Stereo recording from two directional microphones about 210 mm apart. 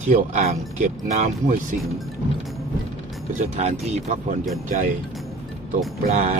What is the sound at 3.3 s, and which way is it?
A man's voice, 35° right (ahead or behind).